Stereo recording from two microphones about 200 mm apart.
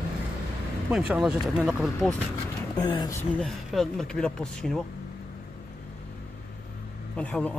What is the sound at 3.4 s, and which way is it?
Speech, centre (ahead or behind).